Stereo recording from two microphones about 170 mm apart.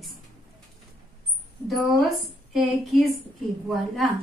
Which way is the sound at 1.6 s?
Centre (ahead or behind).